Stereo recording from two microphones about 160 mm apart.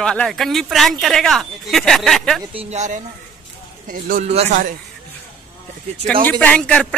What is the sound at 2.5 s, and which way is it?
Speech, 40° right (ahead or behind).